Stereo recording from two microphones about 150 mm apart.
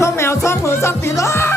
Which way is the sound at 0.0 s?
15° left (ahead or behind).